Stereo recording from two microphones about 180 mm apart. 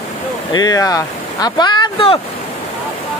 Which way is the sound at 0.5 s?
20° left (ahead or behind).